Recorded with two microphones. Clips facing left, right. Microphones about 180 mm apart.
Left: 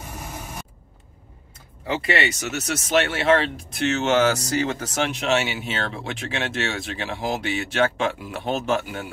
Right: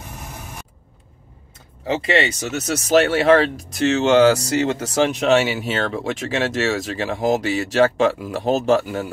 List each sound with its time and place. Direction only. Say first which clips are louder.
1.9 s speech: right 4 dB; 30° right (ahead or behind)